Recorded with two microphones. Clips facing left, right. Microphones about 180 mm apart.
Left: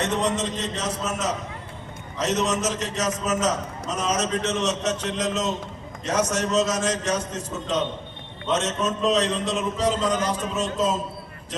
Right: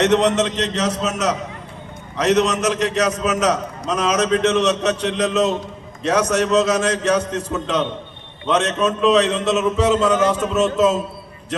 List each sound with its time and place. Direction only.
0.0 s a man's voice: 75° right (ahead or behind)